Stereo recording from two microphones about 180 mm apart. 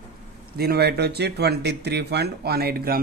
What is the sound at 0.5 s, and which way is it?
Speech, 60° right (ahead or behind).